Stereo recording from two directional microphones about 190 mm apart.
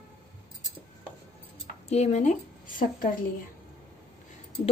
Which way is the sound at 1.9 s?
35° left (ahead or behind).